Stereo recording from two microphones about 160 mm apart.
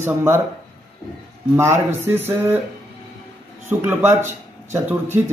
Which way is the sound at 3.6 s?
15° right (ahead or behind).